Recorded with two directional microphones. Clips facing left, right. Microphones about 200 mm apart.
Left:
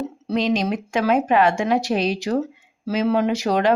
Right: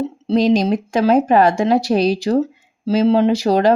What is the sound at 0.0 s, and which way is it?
Speech, 30° right (ahead or behind).